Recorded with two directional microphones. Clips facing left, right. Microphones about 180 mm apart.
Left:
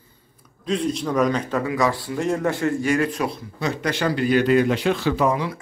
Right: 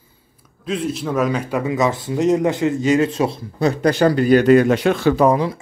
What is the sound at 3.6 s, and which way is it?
Speech, 35° right (ahead or behind).